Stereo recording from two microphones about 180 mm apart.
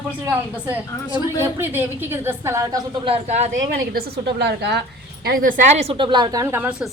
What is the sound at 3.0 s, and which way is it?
Speech, 35° right (ahead or behind).